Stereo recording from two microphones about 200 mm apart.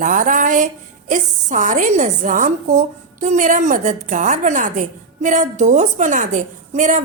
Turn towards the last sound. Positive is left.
turn(degrees=-40)  # may be behind; listen again after turning